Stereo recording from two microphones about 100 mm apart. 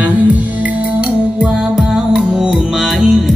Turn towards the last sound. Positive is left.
turn(degrees=-5)  # may be behind; listen again after turning